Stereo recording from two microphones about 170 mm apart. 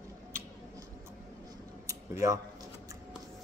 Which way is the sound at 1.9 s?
20° right (ahead or behind).